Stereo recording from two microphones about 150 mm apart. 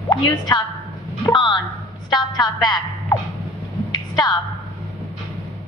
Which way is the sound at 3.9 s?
30° left (ahead or behind).